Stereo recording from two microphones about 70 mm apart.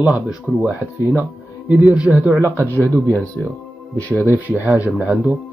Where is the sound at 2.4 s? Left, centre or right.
Right.